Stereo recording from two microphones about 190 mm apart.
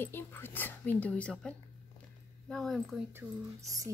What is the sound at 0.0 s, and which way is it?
Speech, 10° left (ahead or behind).